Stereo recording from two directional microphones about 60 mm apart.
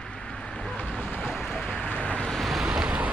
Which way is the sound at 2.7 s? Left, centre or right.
Centre.